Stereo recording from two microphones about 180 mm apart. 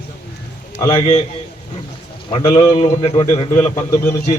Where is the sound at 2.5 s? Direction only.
30° left (ahead or behind).